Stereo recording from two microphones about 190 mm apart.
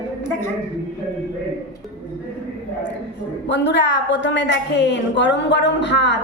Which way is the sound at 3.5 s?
70° left (ahead or behind).